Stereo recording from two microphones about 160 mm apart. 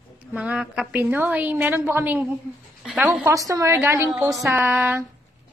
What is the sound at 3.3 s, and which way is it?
A woman's voice, 20° right (ahead or behind).